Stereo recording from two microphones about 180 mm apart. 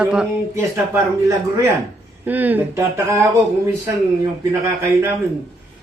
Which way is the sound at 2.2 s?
10° right (ahead or behind).